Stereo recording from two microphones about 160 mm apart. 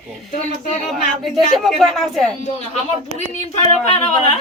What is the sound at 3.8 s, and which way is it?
Speech, 40° left (ahead or behind).